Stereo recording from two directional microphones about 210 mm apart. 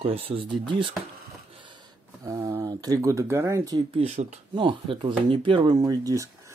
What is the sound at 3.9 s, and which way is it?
Speech, 30° right (ahead or behind).